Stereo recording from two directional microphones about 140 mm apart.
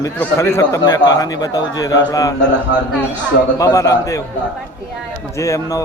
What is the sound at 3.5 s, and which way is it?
Speech, 25° left (ahead or behind).